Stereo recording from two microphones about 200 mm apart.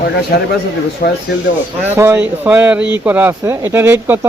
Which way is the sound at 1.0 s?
50° left (ahead or behind).